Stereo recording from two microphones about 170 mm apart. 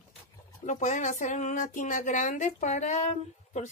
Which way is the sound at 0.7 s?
45° left (ahead or behind).